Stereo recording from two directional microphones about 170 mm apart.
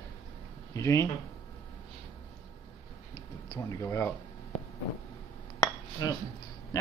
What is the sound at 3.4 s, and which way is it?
Speech, 20° left (ahead or behind).